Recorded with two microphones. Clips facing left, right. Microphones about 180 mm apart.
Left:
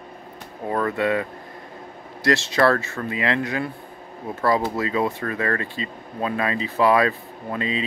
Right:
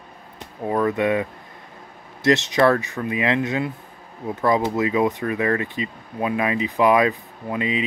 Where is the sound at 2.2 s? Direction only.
20° right (ahead or behind).